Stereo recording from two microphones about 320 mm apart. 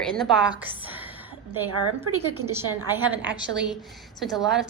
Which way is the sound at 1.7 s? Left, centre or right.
Right.